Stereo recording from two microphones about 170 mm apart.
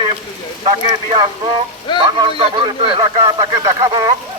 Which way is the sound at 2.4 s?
30° right (ahead or behind).